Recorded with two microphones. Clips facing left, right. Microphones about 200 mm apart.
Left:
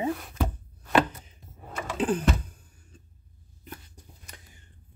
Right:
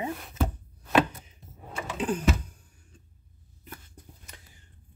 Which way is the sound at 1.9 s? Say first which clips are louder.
Left 3 dB; 30° left (ahead or behind).